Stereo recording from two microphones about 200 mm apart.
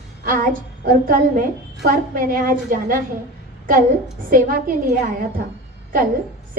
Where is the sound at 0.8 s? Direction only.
45° right (ahead or behind).